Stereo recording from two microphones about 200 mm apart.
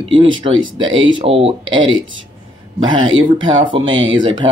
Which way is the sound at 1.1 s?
30° right (ahead or behind).